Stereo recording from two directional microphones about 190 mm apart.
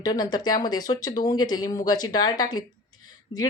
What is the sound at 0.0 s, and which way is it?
A woman's voice, 20° left (ahead or behind).